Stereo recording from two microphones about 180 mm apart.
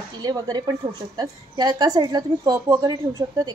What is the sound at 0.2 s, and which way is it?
A woman's voice, 20° right (ahead or behind).